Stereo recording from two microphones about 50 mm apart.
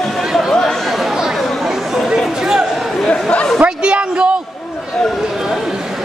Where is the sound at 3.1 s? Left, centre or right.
Left.